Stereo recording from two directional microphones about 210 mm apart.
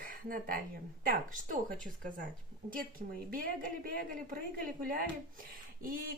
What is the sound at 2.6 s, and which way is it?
A woman's voice, 40° right (ahead or behind).